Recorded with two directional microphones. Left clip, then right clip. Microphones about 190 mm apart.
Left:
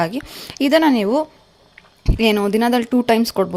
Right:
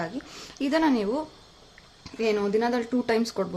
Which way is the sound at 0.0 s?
45° left (ahead or behind).